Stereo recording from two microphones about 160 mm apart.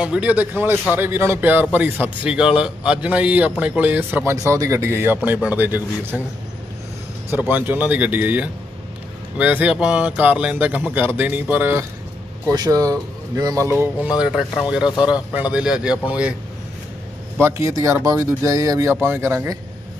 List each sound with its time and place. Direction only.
0.0 s a man's voice: 5° right (ahead or behind)
7.2 s a man's voice: 10° right (ahead or behind)
12.5 s speech: 25° right (ahead or behind)
13.7 s a man's voice: 10° right (ahead or behind)
17.4 s a man's voice: 15° right (ahead or behind)